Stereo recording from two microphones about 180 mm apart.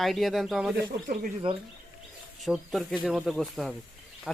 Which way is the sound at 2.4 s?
Centre (ahead or behind).